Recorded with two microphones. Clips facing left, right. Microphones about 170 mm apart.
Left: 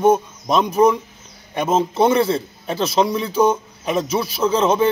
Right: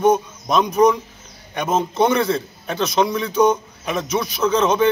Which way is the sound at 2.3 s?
30° left (ahead or behind).